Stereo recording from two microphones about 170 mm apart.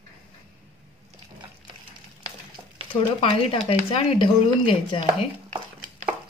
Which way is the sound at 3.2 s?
35° left (ahead or behind).